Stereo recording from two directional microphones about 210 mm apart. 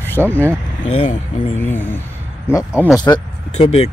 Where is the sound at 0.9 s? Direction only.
25° left (ahead or behind).